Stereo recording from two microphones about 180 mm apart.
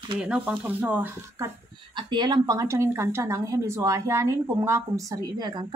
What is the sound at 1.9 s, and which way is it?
Speech, 25° right (ahead or behind).